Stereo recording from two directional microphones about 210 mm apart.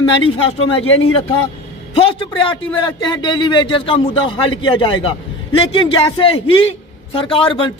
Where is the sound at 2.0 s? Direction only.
25° left (ahead or behind).